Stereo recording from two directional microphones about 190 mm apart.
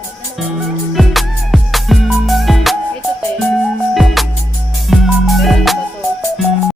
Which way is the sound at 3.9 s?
Centre (ahead or behind).